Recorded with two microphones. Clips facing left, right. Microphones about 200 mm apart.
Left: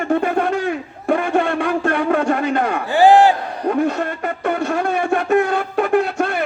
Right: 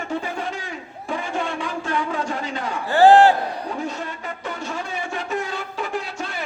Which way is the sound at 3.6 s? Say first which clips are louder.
Left 10 dB; 60° left (ahead or behind).